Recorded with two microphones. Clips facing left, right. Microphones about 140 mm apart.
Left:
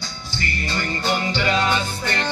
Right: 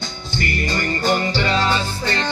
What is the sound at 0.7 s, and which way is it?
Music, 45° right (ahead or behind).